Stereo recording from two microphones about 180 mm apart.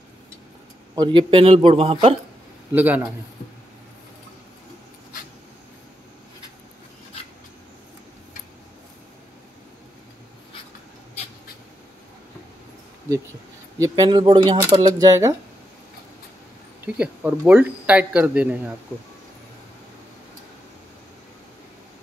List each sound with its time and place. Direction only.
0.9 s speech: 25° right (ahead or behind)
2.7 s speech: 10° right (ahead or behind)
13.7 s speech: 20° right (ahead or behind)
16.8 s speech: 10° right (ahead or behind)